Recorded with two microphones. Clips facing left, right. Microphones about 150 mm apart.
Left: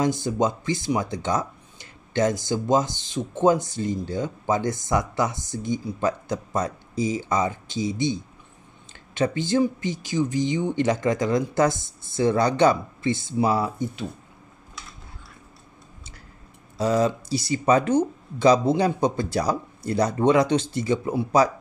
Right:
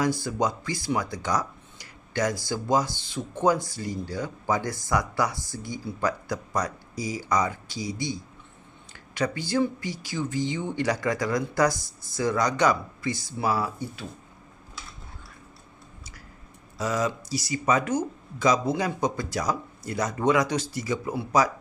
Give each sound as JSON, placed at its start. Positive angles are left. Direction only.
{"t": 0.0, "sound": "speech", "side_deg": 20}
{"t": 16.7, "sound": "speech", "side_deg": 30}